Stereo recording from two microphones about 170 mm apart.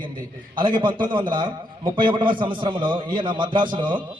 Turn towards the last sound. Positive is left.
turn(degrees=-25)  # may be behind; listen again after turning